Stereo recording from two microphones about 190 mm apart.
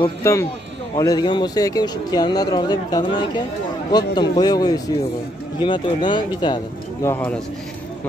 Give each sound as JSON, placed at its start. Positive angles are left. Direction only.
{"t": 0.2, "sound": "speech", "side_deg": 15}